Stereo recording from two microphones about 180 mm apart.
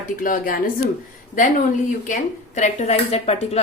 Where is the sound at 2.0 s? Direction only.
45° left (ahead or behind).